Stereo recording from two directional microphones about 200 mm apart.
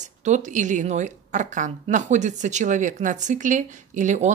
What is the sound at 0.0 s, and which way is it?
Speech, 35° right (ahead or behind).